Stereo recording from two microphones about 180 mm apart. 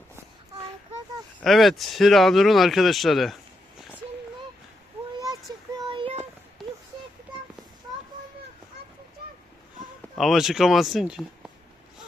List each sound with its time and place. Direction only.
1.4 s speech: centre (ahead or behind)
5.2 s child singing: 20° right (ahead or behind)
10.2 s speech: centre (ahead or behind)